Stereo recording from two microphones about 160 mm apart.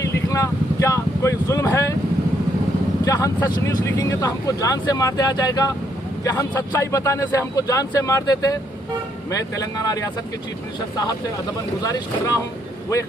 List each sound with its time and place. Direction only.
0.3 s vehicle: 20° left (ahead or behind)
3.0 s speech: 20° left (ahead or behind)
11.8 s speech: 25° left (ahead or behind)